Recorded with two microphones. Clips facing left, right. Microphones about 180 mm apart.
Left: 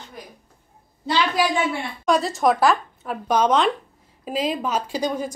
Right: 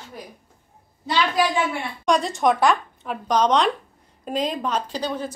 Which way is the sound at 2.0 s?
Centre (ahead or behind).